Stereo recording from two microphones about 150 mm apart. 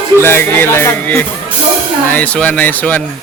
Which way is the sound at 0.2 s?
15° left (ahead or behind).